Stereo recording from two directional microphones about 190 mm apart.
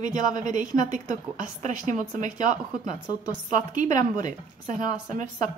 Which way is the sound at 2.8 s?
20° left (ahead or behind).